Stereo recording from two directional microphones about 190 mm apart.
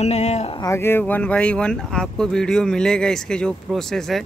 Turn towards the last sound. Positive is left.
turn(degrees=0)  # may be behind; listen again after turning